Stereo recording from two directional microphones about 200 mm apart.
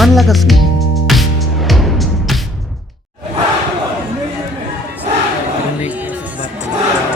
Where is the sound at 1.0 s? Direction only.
Centre (ahead or behind).